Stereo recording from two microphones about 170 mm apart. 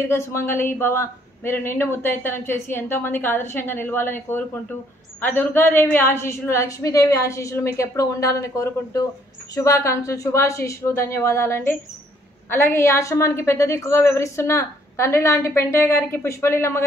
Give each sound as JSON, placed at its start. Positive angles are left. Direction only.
{"t": 0.1, "sound": "speech", "side_deg": 15}